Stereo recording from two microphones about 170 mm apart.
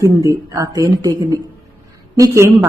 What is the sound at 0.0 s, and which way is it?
A woman's voice, 20° right (ahead or behind).